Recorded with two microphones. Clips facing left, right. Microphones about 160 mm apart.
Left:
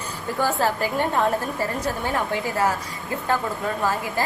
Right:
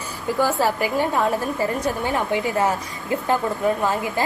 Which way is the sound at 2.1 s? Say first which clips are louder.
Right 3 dB; 20° right (ahead or behind).